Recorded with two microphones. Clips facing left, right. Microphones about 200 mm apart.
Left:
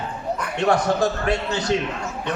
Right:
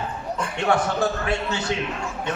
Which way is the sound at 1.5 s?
40° left (ahead or behind).